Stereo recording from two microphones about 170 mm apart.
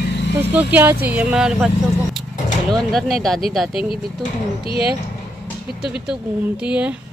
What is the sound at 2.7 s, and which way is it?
A woman's voice, centre (ahead or behind).